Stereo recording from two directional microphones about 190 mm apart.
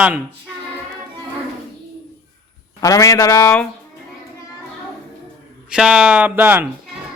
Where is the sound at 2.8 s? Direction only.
15° left (ahead or behind).